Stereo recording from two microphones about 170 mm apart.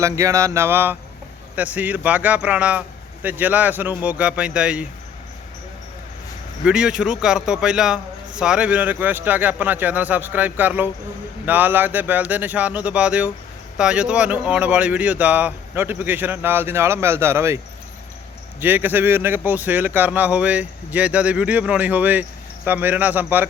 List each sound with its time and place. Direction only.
0.0 s a man's voice: 20° right (ahead or behind)
6.7 s a man's voice: 5° right (ahead or behind)
18.6 s a man's voice: 10° right (ahead or behind)